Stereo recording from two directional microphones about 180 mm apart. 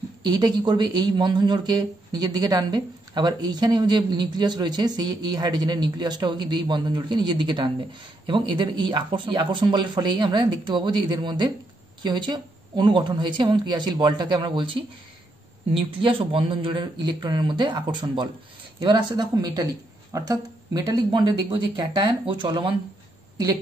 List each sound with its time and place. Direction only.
0.2 s a woman's voice: 25° right (ahead or behind)